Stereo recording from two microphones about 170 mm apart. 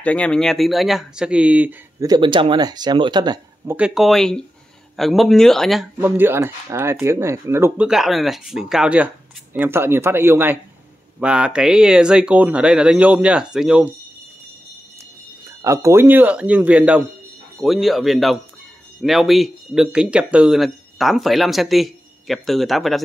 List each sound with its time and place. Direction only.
0.0 s speech: 5° left (ahead or behind); by 1.8 s 10° right (ahead or behind)
2.0 s speech: 25° right (ahead or behind)
3.6 s speech: 5° right (ahead or behind)
5.9 s speech: 10° right (ahead or behind)
15.6 s speech: 15° right (ahead or behind); by 23.0 s centre (ahead or behind)